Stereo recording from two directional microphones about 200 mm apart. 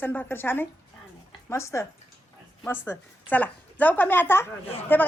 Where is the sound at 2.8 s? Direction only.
10° left (ahead or behind).